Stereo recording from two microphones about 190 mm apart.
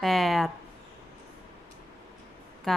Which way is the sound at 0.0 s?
Centre (ahead or behind).